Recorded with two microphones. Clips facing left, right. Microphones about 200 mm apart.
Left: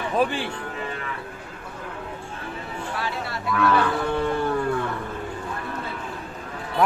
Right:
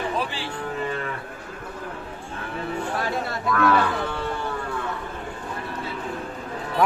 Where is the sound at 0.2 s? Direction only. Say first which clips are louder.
Left 6 dB; 55° left (ahead or behind).